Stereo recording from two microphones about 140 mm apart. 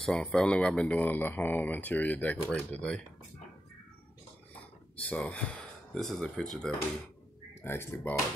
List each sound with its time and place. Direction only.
0.0 s speech: 5° left (ahead or behind)
5.0 s speech: 10° left (ahead or behind)
7.6 s speech: 15° left (ahead or behind)